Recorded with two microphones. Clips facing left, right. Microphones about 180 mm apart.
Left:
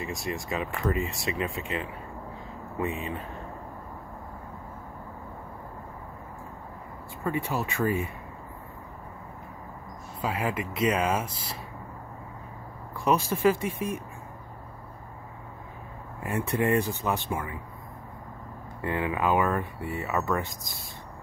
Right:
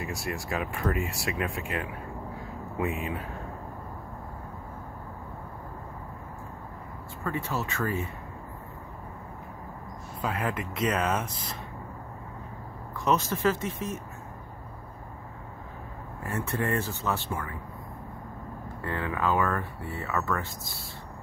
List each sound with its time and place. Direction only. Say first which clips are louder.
0.0 s speech: left 1 dB; 65° right (ahead or behind)
0.3 s speech: left 1 dB; centre (ahead or behind)
7.2 s speech: left 2 dB; 15° left (ahead or behind)
10.2 s speech: left 1 dB; 5° left (ahead or behind)
12.9 s speech: left 1 dB; 10° left (ahead or behind)
16.2 s speech: left 3 dB; 15° left (ahead or behind)
18.8 s speech: left 3 dB; 15° left (ahead or behind)